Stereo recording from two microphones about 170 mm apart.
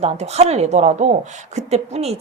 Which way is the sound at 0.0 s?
40° right (ahead or behind).